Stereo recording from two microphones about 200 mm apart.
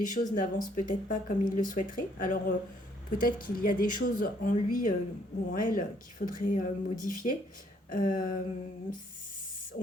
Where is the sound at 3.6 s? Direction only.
45° left (ahead or behind).